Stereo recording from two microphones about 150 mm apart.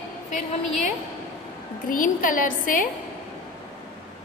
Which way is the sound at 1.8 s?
65° left (ahead or behind).